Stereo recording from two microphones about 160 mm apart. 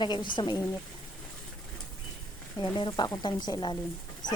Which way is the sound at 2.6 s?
30° left (ahead or behind).